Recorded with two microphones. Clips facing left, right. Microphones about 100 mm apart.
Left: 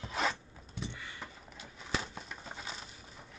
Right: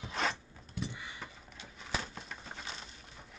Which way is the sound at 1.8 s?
Centre (ahead or behind).